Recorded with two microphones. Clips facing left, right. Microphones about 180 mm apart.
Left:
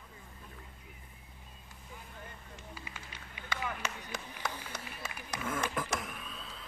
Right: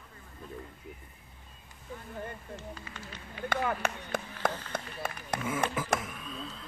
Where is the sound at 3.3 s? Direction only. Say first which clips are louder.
Right 8 dB; 50° right (ahead or behind).